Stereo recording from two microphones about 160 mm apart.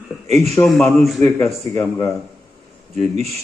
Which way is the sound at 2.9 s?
40° right (ahead or behind).